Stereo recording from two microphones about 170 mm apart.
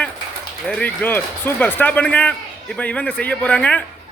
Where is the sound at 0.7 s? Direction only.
10° left (ahead or behind).